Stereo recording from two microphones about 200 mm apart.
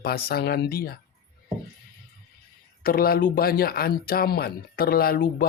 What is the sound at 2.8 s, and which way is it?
Speech, 45° left (ahead or behind).